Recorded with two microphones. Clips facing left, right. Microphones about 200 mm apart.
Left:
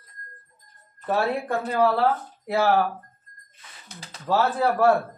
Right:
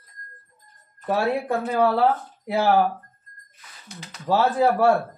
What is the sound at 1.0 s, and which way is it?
Speech, 10° right (ahead or behind).